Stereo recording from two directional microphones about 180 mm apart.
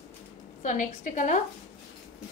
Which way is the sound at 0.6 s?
45° left (ahead or behind).